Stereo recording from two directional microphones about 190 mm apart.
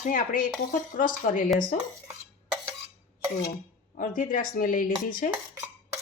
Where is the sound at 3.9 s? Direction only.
45° left (ahead or behind).